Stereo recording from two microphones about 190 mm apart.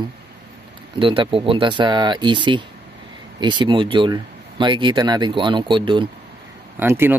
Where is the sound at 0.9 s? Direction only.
25° right (ahead or behind).